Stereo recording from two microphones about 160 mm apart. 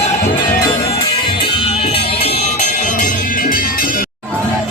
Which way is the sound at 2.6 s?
50° left (ahead or behind).